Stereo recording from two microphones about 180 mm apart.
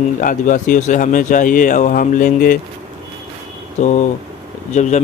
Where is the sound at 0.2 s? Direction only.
45° left (ahead or behind).